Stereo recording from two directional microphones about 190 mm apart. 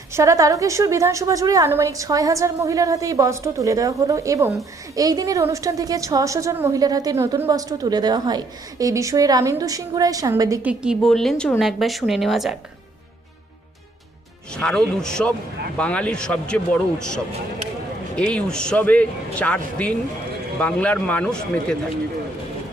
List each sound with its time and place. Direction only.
0.1 s a woman's voice: 15° right (ahead or behind)
10.7 s a man's voice: centre (ahead or behind)
14.5 s a man's voice: 5° left (ahead or behind)
18.2 s a man's voice: 5° left (ahead or behind)